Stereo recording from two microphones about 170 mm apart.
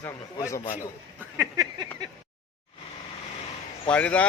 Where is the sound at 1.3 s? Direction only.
20° right (ahead or behind).